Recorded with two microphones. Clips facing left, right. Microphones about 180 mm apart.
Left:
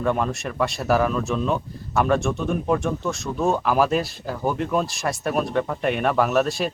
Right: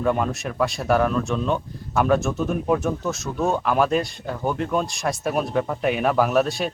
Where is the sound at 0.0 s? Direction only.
Centre (ahead or behind).